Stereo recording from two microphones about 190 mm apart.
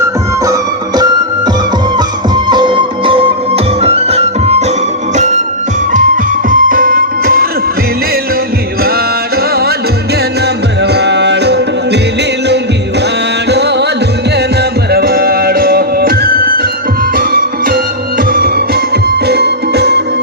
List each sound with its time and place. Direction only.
2.0 s music: 25° right (ahead or behind)
6.5 s music: 45° right (ahead or behind)
10.4 s music: 60° right (ahead or behind)
13.5 s music: 60° right (ahead or behind)
14.8 s music: 55° right (ahead or behind)